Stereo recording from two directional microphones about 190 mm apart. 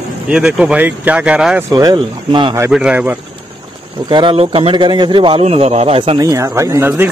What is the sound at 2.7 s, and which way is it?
Speech, 5° right (ahead or behind).